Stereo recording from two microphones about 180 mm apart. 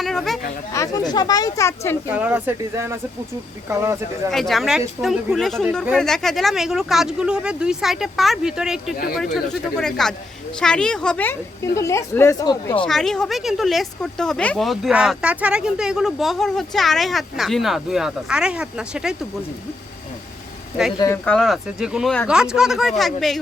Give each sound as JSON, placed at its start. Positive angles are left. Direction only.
{"t": 0.0, "sound": "chatter", "side_deg": 0}
{"t": 0.7, "sound": "speech", "side_deg": 20}
{"t": 2.1, "sound": "speech", "side_deg": -10}
{"t": 4.3, "sound": "a woman's voice", "side_deg": 0}
{"t": 12.8, "sound": "speech", "side_deg": 5}
{"t": 21.2, "sound": "speech", "side_deg": 0}